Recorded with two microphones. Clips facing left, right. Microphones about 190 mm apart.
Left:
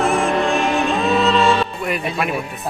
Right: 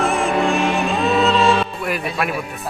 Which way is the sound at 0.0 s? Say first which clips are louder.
Left 1 dB; centre (ahead or behind).